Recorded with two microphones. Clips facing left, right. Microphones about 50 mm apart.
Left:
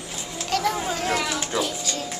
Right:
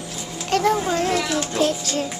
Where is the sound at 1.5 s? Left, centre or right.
Right.